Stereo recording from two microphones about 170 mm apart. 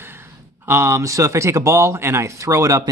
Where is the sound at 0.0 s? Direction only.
15° right (ahead or behind).